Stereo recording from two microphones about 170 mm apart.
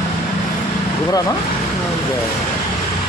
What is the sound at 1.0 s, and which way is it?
Speech, 20° left (ahead or behind).